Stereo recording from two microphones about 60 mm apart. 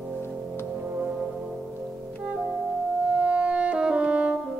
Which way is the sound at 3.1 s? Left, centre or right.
Right.